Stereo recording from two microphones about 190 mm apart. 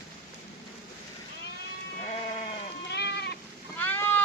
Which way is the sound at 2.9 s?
60° left (ahead or behind).